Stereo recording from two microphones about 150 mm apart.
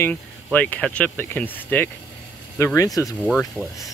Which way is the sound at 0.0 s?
10° left (ahead or behind).